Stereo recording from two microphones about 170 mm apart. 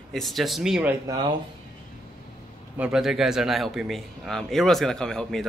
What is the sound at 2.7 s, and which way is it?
Speech, 5° right (ahead or behind).